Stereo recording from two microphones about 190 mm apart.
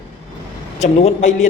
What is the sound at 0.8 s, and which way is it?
Speech, 35° left (ahead or behind).